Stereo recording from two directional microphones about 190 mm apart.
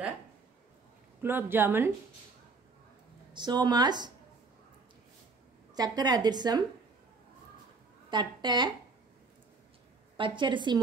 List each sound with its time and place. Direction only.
1.2 s a woman's voice: 10° right (ahead or behind)
3.3 s a woman's voice: 20° right (ahead or behind)
5.8 s a woman's voice: 20° right (ahead or behind)
8.1 s a woman's voice: 25° right (ahead or behind)
10.1 s a woman's voice: 25° right (ahead or behind)